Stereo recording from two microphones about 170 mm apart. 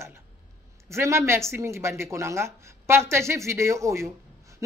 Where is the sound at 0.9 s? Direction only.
15° right (ahead or behind).